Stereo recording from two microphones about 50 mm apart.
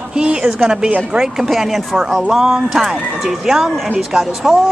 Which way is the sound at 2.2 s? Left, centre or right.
Centre.